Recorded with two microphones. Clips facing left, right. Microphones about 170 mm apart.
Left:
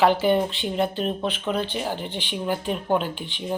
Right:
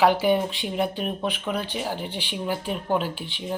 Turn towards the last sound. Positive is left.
turn(degrees=-5)  # may be behind; listen again after turning